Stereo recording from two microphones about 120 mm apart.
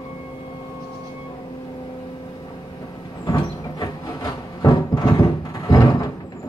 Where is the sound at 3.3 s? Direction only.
30° left (ahead or behind).